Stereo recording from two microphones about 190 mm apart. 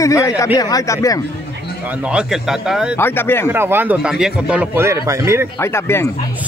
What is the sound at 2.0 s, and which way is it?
Speech, 5° right (ahead or behind).